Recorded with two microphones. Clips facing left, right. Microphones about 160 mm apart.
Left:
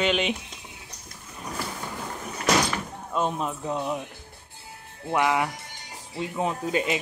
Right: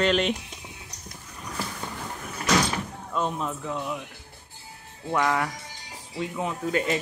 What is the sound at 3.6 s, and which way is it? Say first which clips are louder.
Speech: left 3 dB; 30° left (ahead or behind).